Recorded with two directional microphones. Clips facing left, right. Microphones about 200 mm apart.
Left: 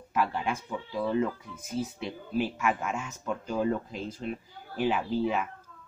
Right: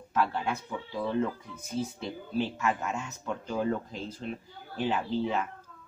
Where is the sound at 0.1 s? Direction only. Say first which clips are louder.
Even; 10° left (ahead or behind).